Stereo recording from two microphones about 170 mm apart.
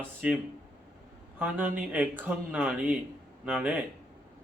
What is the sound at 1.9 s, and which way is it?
Speech, 10° right (ahead or behind).